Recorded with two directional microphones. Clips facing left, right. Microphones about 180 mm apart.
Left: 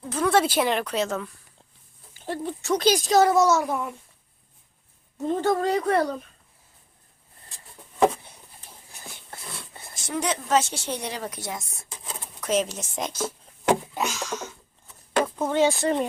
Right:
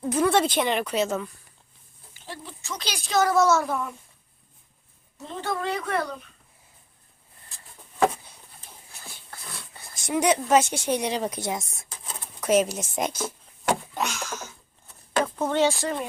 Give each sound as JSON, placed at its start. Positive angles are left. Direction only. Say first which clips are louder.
{"t": 0.3, "sound": "speech", "louder": "left 4 dB", "side_deg": 5}
{"t": 2.1, "sound": "speech", "louder": "left 10 dB", "side_deg": 55}
{"t": 3.2, "sound": "a child's voice", "louder": "left 1 dB", "side_deg": 15}
{"t": 5.1, "sound": "speech", "louder": "left 8 dB", "side_deg": 45}
{"t": 8.9, "sound": "a sound", "louder": "left 3 dB", "side_deg": 20}
{"t": 10.1, "sound": "speech", "louder": "right 4 dB", "side_deg": -15}
{"t": 13.9, "sound": "a sound", "louder": "left 1 dB", "side_deg": 5}
{"t": 15.2, "sound": "a sound", "louder": "left 1 dB", "side_deg": 10}
{"t": 15.7, "sound": "speech", "louder": "left 5 dB", "side_deg": 25}